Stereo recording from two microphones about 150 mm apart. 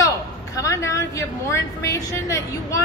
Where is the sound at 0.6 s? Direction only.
20° left (ahead or behind).